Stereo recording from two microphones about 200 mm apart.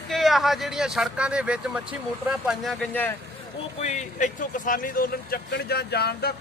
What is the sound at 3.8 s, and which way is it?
Speech, 35° left (ahead or behind).